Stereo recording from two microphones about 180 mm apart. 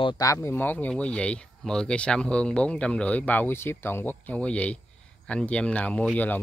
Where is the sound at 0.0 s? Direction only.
20° left (ahead or behind).